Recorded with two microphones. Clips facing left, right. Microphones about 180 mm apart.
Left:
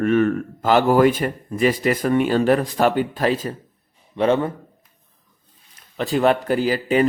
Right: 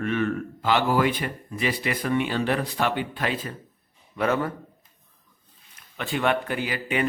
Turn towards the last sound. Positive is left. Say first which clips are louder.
# left 8 dB
turn(degrees=35)  # may be behind; listen again after turning